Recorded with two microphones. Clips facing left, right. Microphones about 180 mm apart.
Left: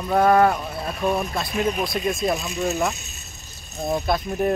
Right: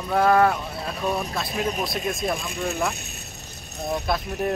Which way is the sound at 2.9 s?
60° right (ahead or behind).